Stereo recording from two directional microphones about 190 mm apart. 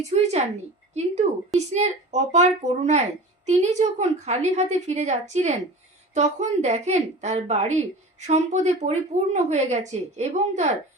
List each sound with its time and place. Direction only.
0.0 s a woman's voice: 35° right (ahead or behind)